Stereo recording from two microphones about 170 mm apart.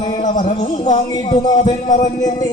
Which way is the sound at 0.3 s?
50° left (ahead or behind).